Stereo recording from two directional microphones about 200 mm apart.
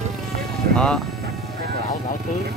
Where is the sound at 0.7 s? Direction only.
5° left (ahead or behind).